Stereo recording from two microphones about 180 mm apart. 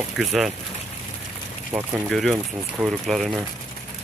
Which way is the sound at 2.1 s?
Centre (ahead or behind).